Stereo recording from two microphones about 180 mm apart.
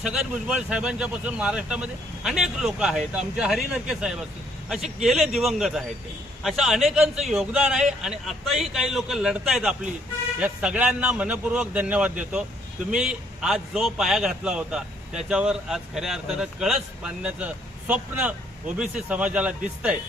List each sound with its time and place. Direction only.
0.0 s a man's voice: 5° right (ahead or behind)